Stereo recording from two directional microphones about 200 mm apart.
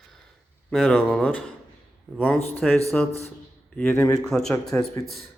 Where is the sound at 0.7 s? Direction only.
5° left (ahead or behind).